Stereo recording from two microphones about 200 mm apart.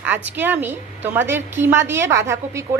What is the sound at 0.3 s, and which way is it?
A woman's voice, 10° right (ahead or behind).